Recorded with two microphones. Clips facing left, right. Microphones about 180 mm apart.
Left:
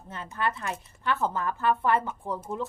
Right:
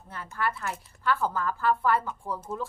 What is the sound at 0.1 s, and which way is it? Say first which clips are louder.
A woman's voice: left 1 dB; 20° left (ahead or behind).